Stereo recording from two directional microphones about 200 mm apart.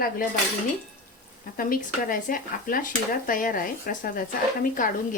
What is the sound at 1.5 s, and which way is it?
Speech, 45° left (ahead or behind).